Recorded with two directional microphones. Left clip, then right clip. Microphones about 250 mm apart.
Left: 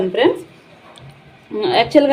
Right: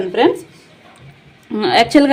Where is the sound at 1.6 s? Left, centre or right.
Right.